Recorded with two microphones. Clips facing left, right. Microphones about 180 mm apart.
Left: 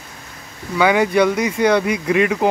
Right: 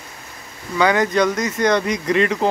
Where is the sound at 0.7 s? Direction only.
10° left (ahead or behind).